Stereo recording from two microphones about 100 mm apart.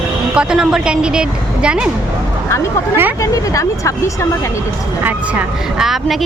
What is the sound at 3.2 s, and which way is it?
Speech, 30° left (ahead or behind).